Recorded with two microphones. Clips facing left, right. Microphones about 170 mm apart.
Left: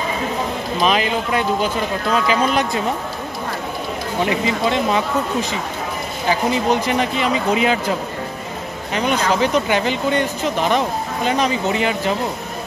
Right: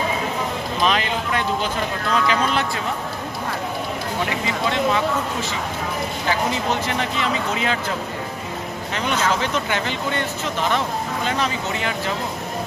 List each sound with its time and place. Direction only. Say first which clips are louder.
0.8 s speech: left 3 dB; 10° left (ahead or behind)
4.3 s speech: left 5 dB; 20° left (ahead or behind)
6.7 s speech: left 5 dB; 15° left (ahead or behind)
8.9 s speech: left 4 dB; 15° left (ahead or behind)